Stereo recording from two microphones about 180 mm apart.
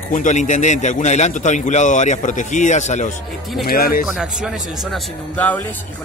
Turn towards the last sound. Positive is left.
turn(degrees=10)  # may be behind; listen again after turning